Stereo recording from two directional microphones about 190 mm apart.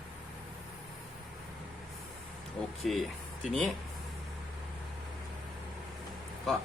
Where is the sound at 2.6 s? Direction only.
5° left (ahead or behind).